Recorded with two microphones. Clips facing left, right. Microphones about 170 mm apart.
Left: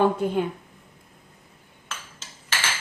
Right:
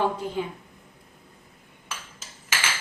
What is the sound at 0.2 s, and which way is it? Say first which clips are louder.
Speech: left 7 dB; 60° left (ahead or behind).